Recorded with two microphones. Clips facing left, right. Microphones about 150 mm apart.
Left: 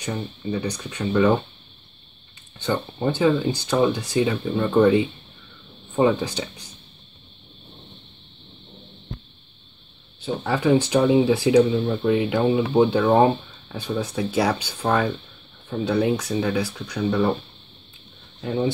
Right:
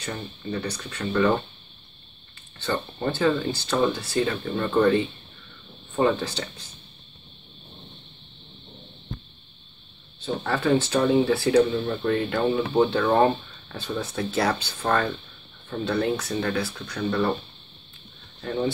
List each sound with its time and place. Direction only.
0.0 s speech: 15° left (ahead or behind)
2.6 s speech: 15° left (ahead or behind)
10.2 s speech: 10° left (ahead or behind)
18.4 s speech: 15° left (ahead or behind)